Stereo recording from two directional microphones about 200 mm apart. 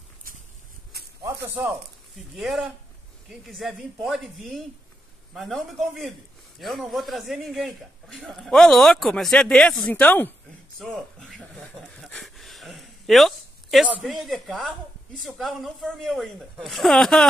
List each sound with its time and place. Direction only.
1.2 s a man's voice: 10° right (ahead or behind); by 10.3 s 10° left (ahead or behind)
10.8 s a sound: centre (ahead or behind)
15.2 s a man's voice: centre (ahead or behind)